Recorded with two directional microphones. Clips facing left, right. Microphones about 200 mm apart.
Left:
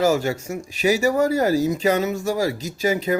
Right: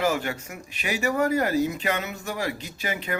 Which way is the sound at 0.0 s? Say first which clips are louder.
Left 6 dB; 40° left (ahead or behind).